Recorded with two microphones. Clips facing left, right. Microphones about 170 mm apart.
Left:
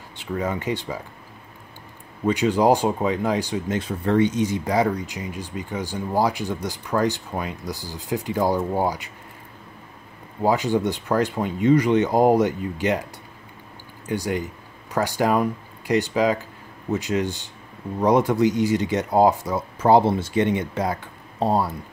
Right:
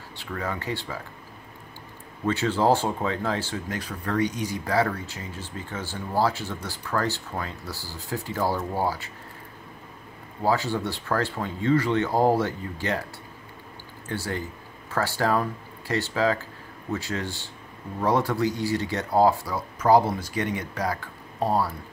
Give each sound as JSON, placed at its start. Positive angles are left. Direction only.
{"t": 0.2, "sound": "speech", "side_deg": 20}
{"t": 2.2, "sound": "speech", "side_deg": 15}
{"t": 10.4, "sound": "speech", "side_deg": 15}
{"t": 14.0, "sound": "speech", "side_deg": 15}